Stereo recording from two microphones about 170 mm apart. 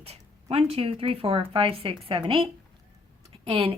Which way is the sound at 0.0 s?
35° right (ahead or behind).